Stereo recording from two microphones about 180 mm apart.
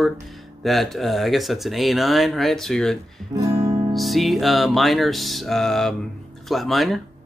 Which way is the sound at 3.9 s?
Centre (ahead or behind).